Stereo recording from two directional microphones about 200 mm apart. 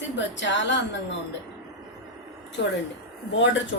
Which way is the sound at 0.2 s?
65° left (ahead or behind).